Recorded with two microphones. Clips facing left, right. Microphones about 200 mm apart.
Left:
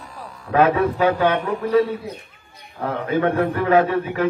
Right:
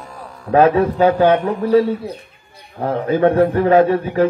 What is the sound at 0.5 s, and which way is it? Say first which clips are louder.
A man's voice: right 4 dB; 30° right (ahead or behind).